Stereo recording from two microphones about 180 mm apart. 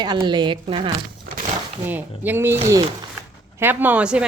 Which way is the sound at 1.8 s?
10° right (ahead or behind).